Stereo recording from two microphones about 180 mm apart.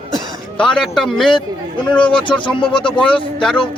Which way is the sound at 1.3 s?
30° left (ahead or behind).